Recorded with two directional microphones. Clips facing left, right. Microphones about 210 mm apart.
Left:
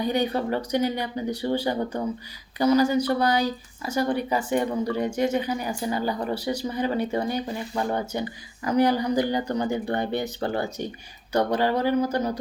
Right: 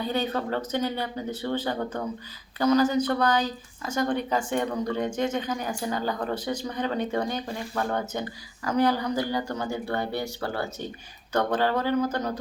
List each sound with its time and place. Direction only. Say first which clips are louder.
0.0 s speech: left 3 dB; 15° left (ahead or behind)